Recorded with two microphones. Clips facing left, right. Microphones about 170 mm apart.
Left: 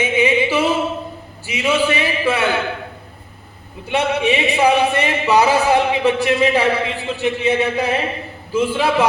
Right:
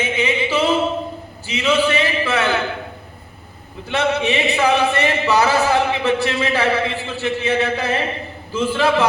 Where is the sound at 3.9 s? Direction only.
10° left (ahead or behind).